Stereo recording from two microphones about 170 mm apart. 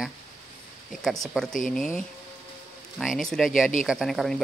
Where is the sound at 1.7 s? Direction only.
5° left (ahead or behind).